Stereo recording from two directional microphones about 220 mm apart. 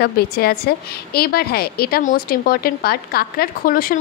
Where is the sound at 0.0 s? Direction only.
45° left (ahead or behind).